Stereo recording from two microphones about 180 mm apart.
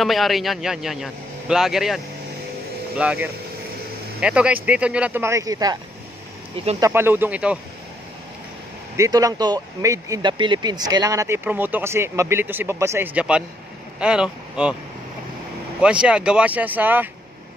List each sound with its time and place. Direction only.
0.0 s a man's voice: centre (ahead or behind)
3.0 s speech: 5° right (ahead or behind)
6.8 s speech: 10° right (ahead or behind)
8.9 s speech: 20° right (ahead or behind)
15.8 s speech: 5° right (ahead or behind)